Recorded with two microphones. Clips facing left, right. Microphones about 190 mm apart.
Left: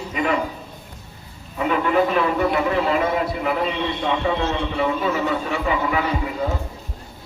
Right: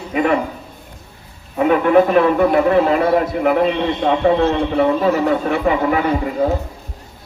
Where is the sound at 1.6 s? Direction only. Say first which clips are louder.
Right 7 dB; 50° right (ahead or behind).